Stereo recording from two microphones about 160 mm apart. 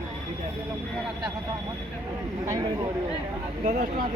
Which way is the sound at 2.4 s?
20° right (ahead or behind).